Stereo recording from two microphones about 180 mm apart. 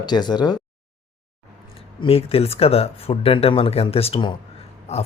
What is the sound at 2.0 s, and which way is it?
Speech, 35° left (ahead or behind).